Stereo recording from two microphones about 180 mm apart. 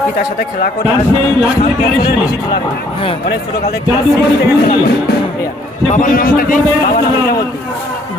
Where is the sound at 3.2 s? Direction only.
60° left (ahead or behind).